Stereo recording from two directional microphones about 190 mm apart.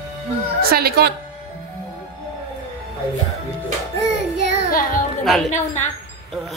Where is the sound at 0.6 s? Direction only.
55° right (ahead or behind).